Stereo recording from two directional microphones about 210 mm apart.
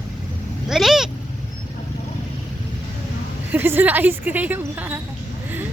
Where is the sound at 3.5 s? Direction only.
10° right (ahead or behind).